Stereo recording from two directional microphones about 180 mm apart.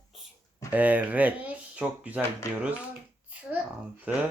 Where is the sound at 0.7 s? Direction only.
10° right (ahead or behind).